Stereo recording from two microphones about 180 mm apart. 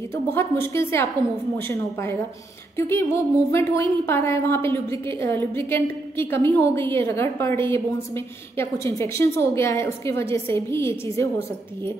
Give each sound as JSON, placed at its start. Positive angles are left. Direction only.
{"t": 0.1, "sound": "a woman's voice", "side_deg": 15}